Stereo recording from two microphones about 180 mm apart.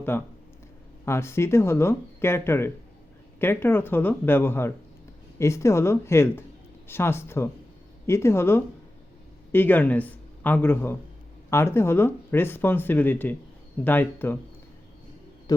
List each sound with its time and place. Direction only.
0.1 s a man's voice: 10° left (ahead or behind)
15.5 s speech: 20° left (ahead or behind)